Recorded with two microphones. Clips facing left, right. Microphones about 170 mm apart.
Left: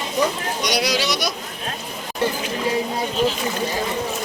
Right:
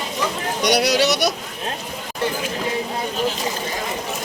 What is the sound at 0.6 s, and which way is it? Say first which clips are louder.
Speech: right 5 dB; 60° right (ahead or behind).